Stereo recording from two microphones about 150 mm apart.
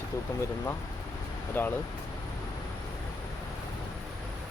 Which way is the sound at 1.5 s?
15° left (ahead or behind).